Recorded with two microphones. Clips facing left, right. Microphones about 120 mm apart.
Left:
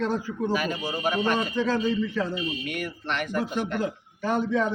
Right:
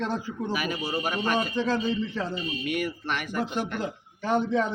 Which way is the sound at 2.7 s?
5° right (ahead or behind).